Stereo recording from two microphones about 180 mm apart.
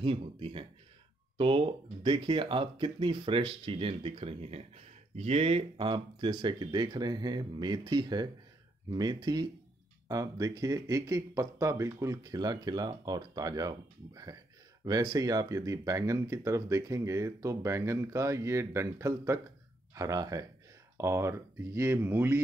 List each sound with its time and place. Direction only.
0.0 s speech: 30° right (ahead or behind); by 22.4 s 15° right (ahead or behind)